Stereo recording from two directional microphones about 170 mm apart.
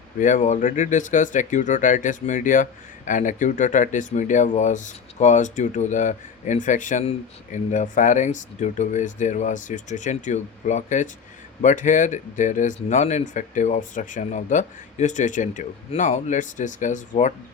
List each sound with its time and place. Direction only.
0.2 s speech: 45° left (ahead or behind)